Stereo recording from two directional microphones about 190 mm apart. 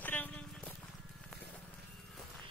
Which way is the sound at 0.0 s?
10° left (ahead or behind).